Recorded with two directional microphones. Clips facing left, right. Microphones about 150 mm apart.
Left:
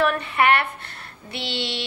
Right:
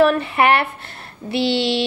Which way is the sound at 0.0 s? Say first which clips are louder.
Right 5 dB; 30° right (ahead or behind).